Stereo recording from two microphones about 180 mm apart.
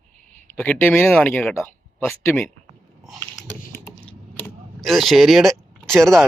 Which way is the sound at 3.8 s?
10° left (ahead or behind).